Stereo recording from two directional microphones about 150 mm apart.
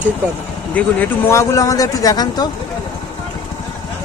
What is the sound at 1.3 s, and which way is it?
A man's voice, 20° left (ahead or behind).